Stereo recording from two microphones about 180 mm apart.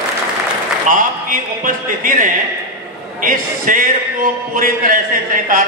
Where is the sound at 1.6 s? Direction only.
50° right (ahead or behind).